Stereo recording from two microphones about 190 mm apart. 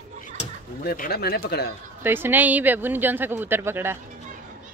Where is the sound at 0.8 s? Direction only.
50° left (ahead or behind).